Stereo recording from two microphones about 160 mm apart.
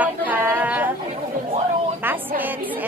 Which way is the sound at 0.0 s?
10° right (ahead or behind).